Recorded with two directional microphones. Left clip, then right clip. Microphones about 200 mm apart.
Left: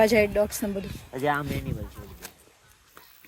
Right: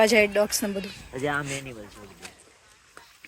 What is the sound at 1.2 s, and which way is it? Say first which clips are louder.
Speech: left 2 dB; 45° left (ahead or behind).